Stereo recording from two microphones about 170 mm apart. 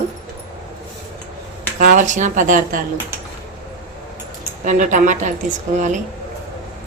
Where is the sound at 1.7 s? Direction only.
50° right (ahead or behind).